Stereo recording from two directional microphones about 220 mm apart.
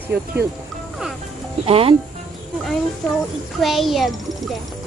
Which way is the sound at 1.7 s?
25° right (ahead or behind).